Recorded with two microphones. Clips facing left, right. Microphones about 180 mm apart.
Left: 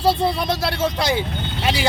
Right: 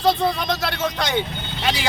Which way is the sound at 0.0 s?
30° left (ahead or behind).